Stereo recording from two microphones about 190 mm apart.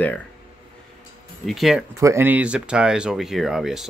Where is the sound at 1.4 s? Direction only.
Centre (ahead or behind).